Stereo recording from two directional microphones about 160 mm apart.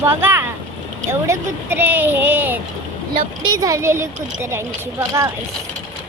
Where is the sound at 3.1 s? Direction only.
30° right (ahead or behind).